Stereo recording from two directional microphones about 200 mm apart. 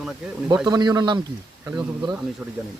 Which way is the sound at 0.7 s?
20° right (ahead or behind).